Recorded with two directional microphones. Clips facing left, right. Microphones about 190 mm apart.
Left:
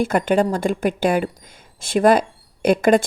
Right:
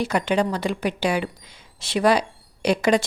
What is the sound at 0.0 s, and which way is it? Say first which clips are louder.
A woman's voice: left 4 dB; 50° left (ahead or behind).